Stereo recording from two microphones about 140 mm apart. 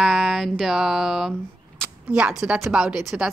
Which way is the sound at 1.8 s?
5° right (ahead or behind).